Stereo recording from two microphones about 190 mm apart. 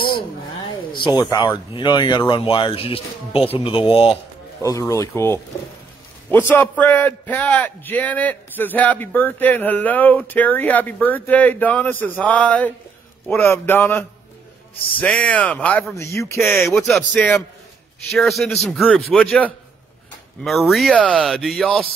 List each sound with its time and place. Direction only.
0.9 s a sound: 25° left (ahead or behind)
1.7 s speech: 25° left (ahead or behind)
4.6 s a man's voice: 15° left (ahead or behind)
16.6 s a man's voice: centre (ahead or behind)